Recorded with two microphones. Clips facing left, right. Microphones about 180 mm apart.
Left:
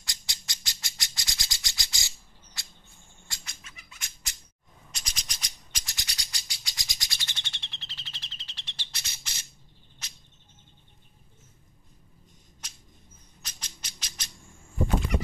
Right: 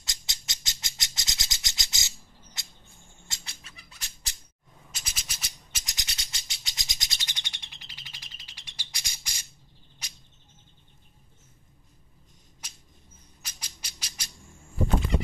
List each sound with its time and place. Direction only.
0.0 s bird: 20° right (ahead or behind)
3.3 s cat: 30° right (ahead or behind)
4.9 s a sound: 5° right (ahead or behind)
5.9 s bird: 20° right (ahead or behind)
13.4 s music: 10° right (ahead or behind)